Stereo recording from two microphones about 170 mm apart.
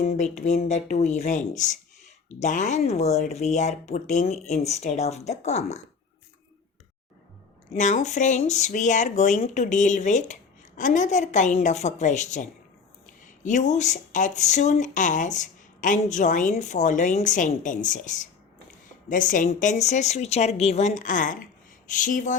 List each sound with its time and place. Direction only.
0.0 s speech: 40° left (ahead or behind)
7.7 s speech: 45° left (ahead or behind)